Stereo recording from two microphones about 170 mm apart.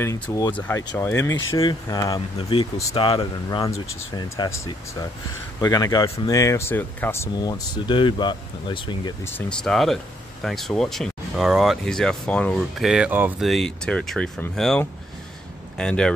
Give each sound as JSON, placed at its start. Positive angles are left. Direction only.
{"t": 0.0, "sound": "speech", "side_deg": 15}
{"t": 2.5, "sound": "speech", "side_deg": 30}
{"t": 9.2, "sound": "speech", "side_deg": 10}
{"t": 13.4, "sound": "speech", "side_deg": 0}